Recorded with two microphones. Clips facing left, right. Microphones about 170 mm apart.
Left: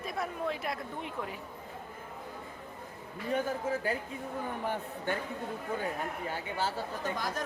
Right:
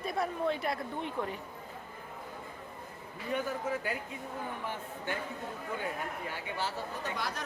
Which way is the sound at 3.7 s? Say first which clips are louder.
Left 3 dB; 30° left (ahead or behind).